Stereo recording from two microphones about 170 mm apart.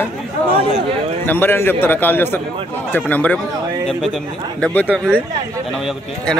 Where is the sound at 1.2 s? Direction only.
10° left (ahead or behind).